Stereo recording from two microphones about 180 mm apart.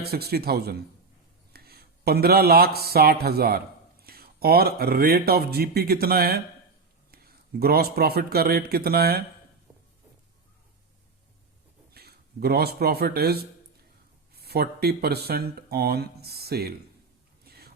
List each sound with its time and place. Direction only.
0.0 s a man's voice: 60° right (ahead or behind)
11.9 s speech: 60° right (ahead or behind)